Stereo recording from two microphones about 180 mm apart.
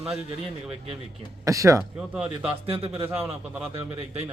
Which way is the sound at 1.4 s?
15° right (ahead or behind).